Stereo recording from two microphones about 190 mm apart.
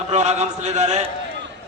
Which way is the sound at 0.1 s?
35° right (ahead or behind).